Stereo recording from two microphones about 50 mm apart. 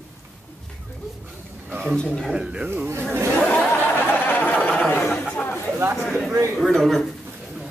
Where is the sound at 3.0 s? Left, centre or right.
Right.